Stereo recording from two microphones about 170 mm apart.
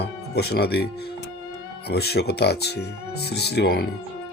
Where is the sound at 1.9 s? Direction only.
70° left (ahead or behind).